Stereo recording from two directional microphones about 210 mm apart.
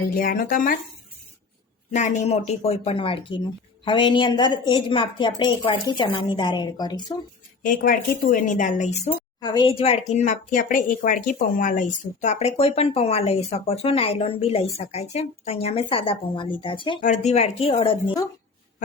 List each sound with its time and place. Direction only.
0.1 s speech: 40° left (ahead or behind)
1.9 s speech: 35° left (ahead or behind)
7.6 s speech: 40° left (ahead or behind)
9.4 s speech: 20° left (ahead or behind)
17.0 s speech: 35° left (ahead or behind)